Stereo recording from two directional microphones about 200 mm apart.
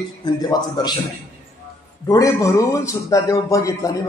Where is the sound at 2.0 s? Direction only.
15° left (ahead or behind).